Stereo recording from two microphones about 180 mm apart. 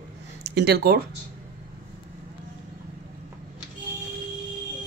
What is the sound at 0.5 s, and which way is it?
Speech, 65° right (ahead or behind).